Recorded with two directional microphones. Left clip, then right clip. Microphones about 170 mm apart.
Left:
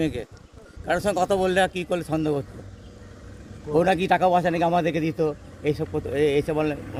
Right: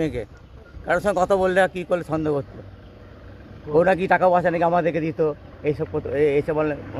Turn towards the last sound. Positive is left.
turn(degrees=15)  # may be behind; listen again after turning